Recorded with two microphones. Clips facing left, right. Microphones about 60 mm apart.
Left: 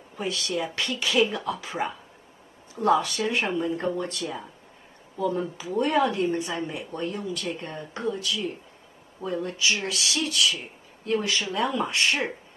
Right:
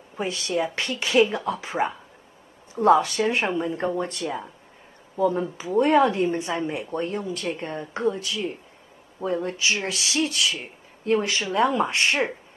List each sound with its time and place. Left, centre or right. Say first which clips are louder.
0.2 s speech: right 3 dB; right